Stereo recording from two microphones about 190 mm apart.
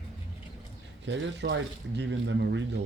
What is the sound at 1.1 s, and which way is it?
Speech, 70° right (ahead or behind).